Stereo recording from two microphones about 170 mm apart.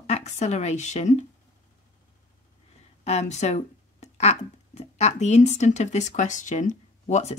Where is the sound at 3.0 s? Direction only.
40° left (ahead or behind).